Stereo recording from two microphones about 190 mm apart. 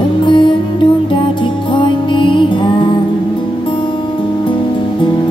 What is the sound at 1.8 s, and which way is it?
Music, 25° left (ahead or behind).